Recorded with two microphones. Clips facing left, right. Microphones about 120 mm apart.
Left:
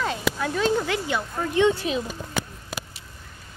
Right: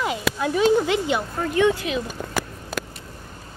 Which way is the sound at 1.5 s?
25° left (ahead or behind).